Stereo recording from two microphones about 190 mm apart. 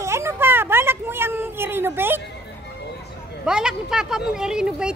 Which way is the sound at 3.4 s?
5° right (ahead or behind).